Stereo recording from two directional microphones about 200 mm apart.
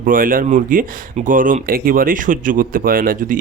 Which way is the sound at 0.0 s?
45° right (ahead or behind).